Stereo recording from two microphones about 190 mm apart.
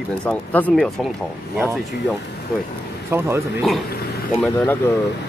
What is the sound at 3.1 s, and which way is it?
Speech, 15° right (ahead or behind).